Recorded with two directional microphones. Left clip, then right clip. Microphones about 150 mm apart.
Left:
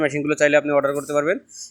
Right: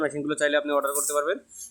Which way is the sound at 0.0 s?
20° left (ahead or behind).